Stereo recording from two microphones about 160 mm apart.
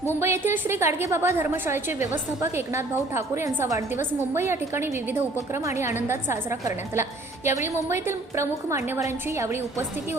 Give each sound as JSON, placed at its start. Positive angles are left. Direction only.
{"t": 0.2, "sound": "a woman's voice", "side_deg": -15}